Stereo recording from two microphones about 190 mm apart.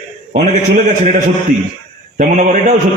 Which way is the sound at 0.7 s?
40° right (ahead or behind).